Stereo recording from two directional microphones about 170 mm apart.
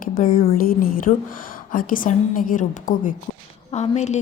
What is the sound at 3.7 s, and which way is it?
Speech, 40° left (ahead or behind).